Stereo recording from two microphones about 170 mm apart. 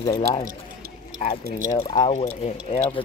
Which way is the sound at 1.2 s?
45° left (ahead or behind).